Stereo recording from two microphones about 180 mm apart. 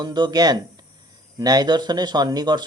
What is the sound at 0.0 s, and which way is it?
Speech, 20° right (ahead or behind).